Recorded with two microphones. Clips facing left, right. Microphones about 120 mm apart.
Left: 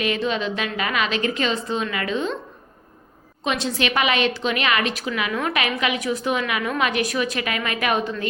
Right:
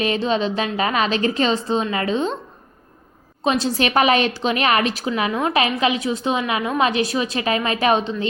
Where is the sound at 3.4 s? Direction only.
35° right (ahead or behind).